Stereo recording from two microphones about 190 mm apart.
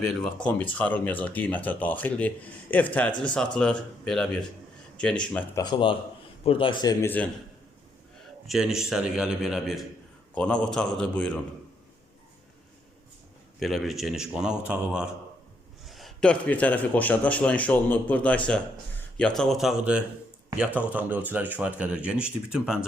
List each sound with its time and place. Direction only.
0.4 s a man's voice: 10° left (ahead or behind)
5.6 s speech: 25° left (ahead or behind)
7.0 s speech: 10° left (ahead or behind)
8.4 s a man's voice: centre (ahead or behind)
13.6 s a man's voice: centre (ahead or behind)